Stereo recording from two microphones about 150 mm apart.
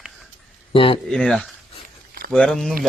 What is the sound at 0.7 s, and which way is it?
Speech, 35° left (ahead or behind).